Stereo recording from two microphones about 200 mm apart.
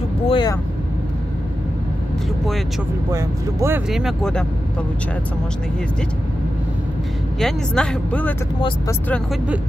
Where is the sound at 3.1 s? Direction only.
15° right (ahead or behind).